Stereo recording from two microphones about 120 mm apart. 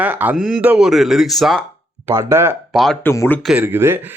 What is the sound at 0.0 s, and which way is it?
Speech, 15° right (ahead or behind).